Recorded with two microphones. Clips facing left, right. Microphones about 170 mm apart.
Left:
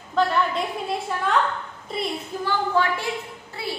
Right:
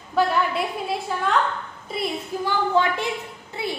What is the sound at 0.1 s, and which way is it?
A woman's voice, 5° right (ahead or behind).